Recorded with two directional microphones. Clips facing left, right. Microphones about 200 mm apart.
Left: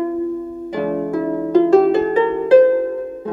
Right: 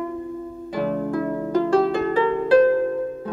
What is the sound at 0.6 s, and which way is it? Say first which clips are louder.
Harp: left 3 dB; 10° left (ahead or behind).